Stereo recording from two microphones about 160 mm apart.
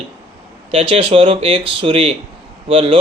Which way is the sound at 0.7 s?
35° right (ahead or behind).